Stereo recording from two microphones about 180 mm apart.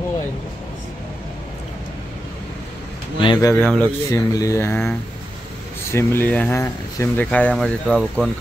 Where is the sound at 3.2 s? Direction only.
25° left (ahead or behind).